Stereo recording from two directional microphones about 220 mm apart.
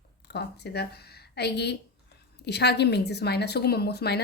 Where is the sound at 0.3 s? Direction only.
50° left (ahead or behind).